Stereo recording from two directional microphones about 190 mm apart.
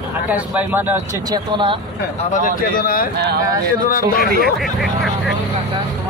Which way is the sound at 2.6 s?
50° left (ahead or behind).